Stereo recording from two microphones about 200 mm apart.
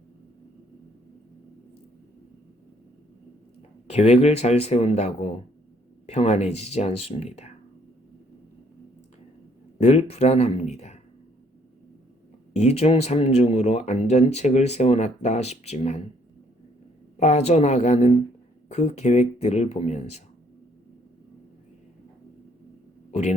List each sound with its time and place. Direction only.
3.8 s speech: 35° left (ahead or behind)
9.8 s speech: 30° left (ahead or behind)
12.5 s speech: 30° left (ahead or behind)
17.2 s speech: 35° left (ahead or behind)